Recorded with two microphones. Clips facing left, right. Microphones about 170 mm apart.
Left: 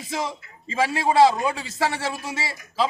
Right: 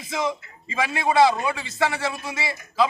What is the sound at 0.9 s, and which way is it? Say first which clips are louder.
A man's voice: left 1 dB; 40° left (ahead or behind).